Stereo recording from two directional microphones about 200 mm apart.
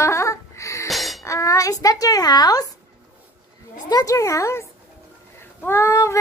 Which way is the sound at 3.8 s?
20° left (ahead or behind).